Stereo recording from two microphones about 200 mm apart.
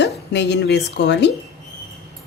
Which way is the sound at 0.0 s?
60° left (ahead or behind).